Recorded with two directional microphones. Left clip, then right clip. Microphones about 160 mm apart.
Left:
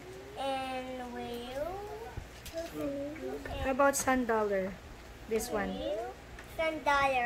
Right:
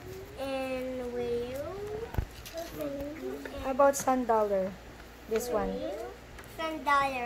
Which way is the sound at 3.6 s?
10° left (ahead or behind).